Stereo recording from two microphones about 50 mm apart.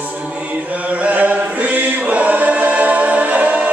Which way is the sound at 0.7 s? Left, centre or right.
Right.